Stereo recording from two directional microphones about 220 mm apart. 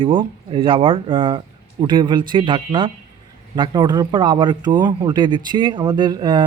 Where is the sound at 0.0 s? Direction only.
25° right (ahead or behind).